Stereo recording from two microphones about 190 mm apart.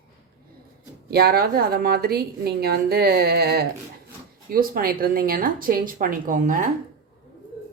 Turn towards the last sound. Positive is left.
turn(degrees=-45)  # may be behind; listen again after turning